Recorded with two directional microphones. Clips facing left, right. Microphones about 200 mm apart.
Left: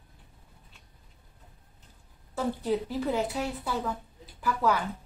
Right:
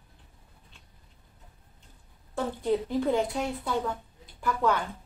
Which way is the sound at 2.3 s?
5° left (ahead or behind).